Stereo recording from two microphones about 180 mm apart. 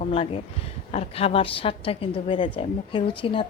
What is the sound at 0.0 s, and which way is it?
A woman's voice, 35° left (ahead or behind).